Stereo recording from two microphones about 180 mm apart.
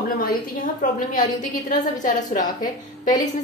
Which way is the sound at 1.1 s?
50° left (ahead or behind).